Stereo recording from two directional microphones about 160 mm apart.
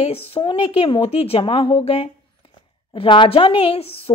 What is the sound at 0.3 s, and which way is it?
A woman's voice, 35° left (ahead or behind).